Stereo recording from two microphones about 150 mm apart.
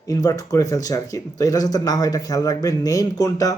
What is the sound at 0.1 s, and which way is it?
Speech, 25° left (ahead or behind).